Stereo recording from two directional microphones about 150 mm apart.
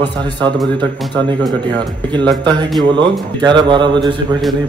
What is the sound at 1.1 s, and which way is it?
A man's voice, 30° right (ahead or behind).